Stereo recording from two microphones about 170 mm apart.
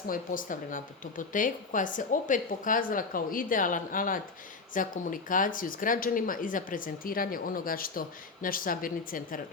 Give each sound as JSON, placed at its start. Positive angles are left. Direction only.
{"t": 0.1, "sound": "speech", "side_deg": 55}